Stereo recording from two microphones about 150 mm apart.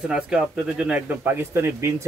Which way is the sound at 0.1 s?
5° right (ahead or behind).